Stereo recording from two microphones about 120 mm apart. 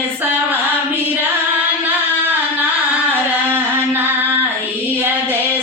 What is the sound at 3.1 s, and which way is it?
Singing, 15° right (ahead or behind).